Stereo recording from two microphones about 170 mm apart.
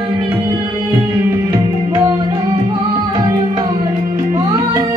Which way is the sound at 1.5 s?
15° right (ahead or behind).